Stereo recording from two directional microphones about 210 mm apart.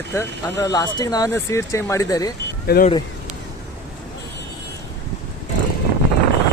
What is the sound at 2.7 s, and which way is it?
Speech, 50° left (ahead or behind).